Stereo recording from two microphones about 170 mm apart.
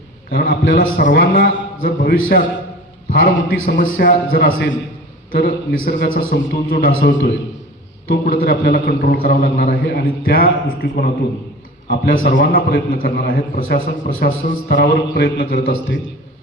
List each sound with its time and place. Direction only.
0.3 s a man's voice: 65° left (ahead or behind); by 1.0 s 85° left
1.1 s a man's voice: 60° left (ahead or behind)
6.1 s a man's voice: 70° left (ahead or behind)
11.9 s a man's voice: 60° left (ahead or behind); by 16.0 s 75° left (ahead or behind)